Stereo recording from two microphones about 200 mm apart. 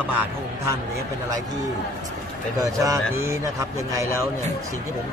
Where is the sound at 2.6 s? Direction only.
15° right (ahead or behind).